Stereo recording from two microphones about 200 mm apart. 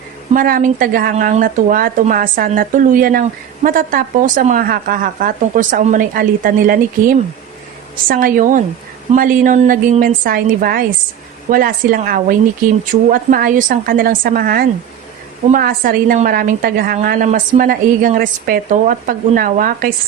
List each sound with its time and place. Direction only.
0.3 s speech: 45° right (ahead or behind)